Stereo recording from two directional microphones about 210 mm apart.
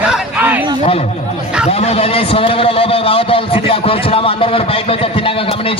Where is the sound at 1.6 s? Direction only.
30° left (ahead or behind).